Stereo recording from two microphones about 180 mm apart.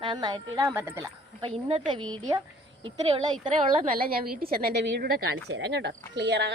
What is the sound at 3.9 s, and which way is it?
A woman's voice, 55° right (ahead or behind).